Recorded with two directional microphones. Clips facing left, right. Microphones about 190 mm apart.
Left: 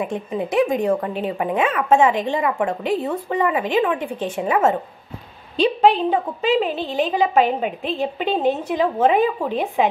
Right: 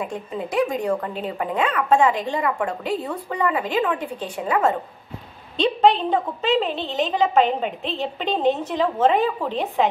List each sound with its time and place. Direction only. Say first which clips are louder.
0.0 s speech: left 4 dB; 20° left (ahead or behind)
5.6 s a woman's voice: left 2 dB; 10° left (ahead or behind)